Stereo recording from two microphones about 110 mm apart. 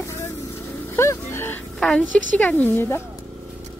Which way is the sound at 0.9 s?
25° left (ahead or behind).